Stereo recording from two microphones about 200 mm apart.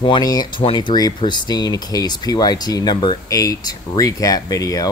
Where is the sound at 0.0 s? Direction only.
20° left (ahead or behind).